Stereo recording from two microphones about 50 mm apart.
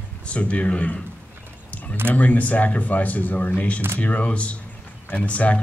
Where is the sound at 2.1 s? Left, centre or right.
Left.